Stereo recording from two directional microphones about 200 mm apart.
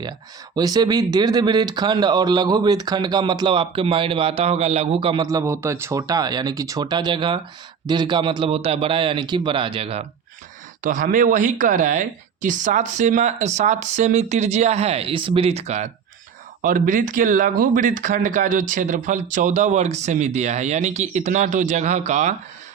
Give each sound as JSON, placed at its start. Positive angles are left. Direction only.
{"t": 0.5, "sound": "speech", "side_deg": -20}
{"t": 10.8, "sound": "speech", "side_deg": -40}